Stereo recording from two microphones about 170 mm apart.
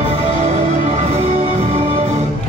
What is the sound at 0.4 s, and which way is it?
Music, 40° right (ahead or behind).